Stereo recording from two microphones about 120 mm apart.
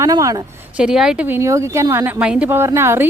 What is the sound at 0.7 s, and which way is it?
Speech, 5° right (ahead or behind).